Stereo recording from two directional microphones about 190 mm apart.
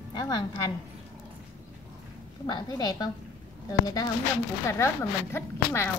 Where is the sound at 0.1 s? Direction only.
20° left (ahead or behind).